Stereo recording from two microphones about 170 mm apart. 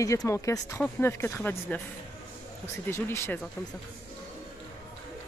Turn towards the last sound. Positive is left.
turn(degrees=15)  # may be behind; listen again after turning